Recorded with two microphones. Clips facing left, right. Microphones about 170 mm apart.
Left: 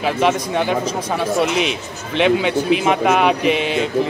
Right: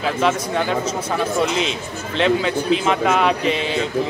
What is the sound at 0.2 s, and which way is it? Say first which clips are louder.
Speech: left 2 dB; 15° left (ahead or behind).